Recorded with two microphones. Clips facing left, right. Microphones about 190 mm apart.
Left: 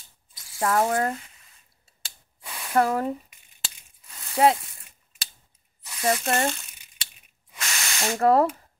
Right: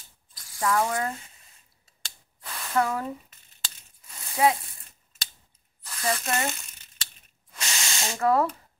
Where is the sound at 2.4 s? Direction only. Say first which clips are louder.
Even; 10° left (ahead or behind).